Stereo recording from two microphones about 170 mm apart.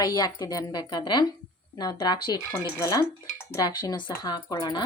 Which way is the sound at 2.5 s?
15° left (ahead or behind).